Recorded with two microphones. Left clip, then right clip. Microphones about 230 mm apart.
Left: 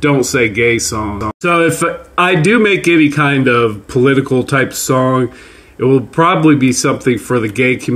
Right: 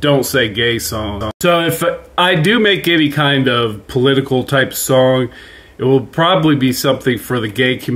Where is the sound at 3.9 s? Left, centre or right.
Right.